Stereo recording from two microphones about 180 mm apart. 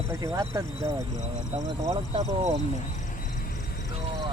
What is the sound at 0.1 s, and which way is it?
Speech, 15° right (ahead or behind).